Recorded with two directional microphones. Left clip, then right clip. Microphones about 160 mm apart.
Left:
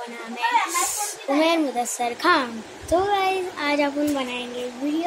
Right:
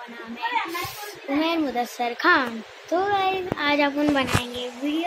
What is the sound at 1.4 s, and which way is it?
A woman's voice, 10° left (ahead or behind).